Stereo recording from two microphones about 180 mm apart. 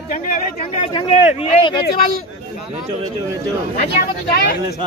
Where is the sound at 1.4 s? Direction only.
30° left (ahead or behind).